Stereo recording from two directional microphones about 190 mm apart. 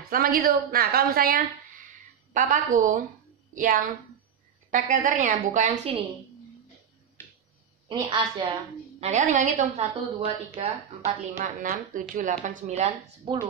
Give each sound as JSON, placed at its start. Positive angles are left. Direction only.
{"t": 0.1, "sound": "a woman's voice", "side_deg": -50}
{"t": 5.9, "sound": "a woman's voice", "side_deg": -30}
{"t": 7.2, "sound": "a sound", "side_deg": 10}
{"t": 7.9, "sound": "a woman's voice", "side_deg": -25}
{"t": 9.0, "sound": "a woman's voice", "side_deg": -40}